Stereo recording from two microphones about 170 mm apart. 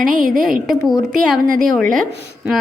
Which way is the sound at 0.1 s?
50° right (ahead or behind).